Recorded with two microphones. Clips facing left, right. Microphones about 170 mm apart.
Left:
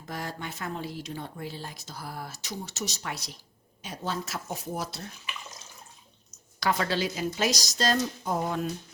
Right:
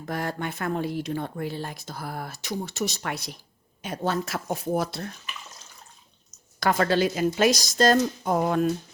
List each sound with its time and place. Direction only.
0.0 s speech: 60° right (ahead or behind)
6.6 s a woman's voice: 50° right (ahead or behind)